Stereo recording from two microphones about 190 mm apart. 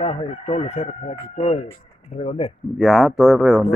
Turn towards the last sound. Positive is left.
turn(degrees=0)  # may be behind; listen again after turning